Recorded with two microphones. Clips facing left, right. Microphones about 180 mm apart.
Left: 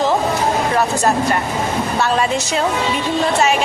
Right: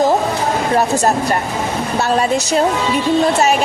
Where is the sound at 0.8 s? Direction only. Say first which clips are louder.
Right 1 dB; 40° right (ahead or behind).